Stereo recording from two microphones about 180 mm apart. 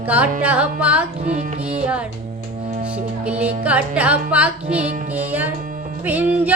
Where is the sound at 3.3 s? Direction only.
5° right (ahead or behind).